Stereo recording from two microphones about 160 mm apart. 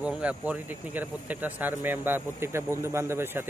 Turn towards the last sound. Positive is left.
turn(degrees=-15)  # may be behind; listen again after turning